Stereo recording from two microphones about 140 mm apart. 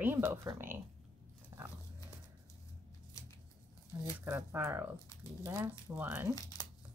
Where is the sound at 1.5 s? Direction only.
25° right (ahead or behind).